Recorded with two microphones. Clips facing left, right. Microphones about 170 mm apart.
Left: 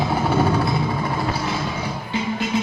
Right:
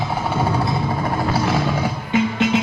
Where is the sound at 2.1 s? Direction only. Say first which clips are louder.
Right 6 dB; 75° right (ahead or behind).